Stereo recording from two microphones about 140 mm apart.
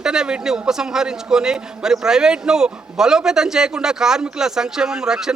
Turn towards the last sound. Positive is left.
turn(degrees=-5)  # may be behind; listen again after turning